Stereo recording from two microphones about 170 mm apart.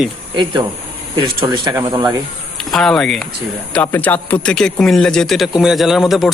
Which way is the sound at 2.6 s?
Centre (ahead or behind).